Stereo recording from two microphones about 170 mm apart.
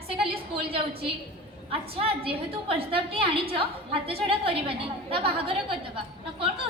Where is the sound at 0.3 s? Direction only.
35° right (ahead or behind).